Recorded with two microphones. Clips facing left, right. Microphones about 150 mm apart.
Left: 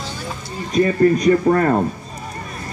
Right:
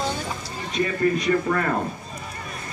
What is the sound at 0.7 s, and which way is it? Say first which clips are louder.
Speech: left 8 dB; 45° left (ahead or behind).